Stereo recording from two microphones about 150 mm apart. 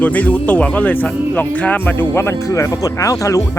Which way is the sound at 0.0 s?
10° left (ahead or behind).